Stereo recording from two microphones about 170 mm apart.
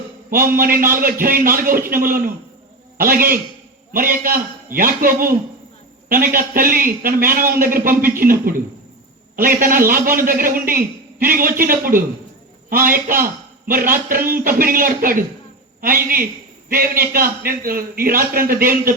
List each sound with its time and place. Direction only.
0.3 s a man's voice: 55° right (ahead or behind)